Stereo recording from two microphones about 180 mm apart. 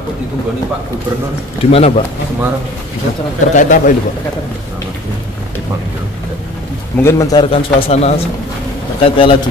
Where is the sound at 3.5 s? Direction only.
45° left (ahead or behind).